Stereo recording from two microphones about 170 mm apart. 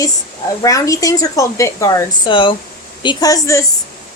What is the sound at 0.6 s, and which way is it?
A woman's voice, 20° left (ahead or behind).